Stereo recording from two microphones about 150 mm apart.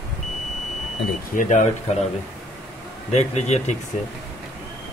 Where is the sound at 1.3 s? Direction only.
60° left (ahead or behind).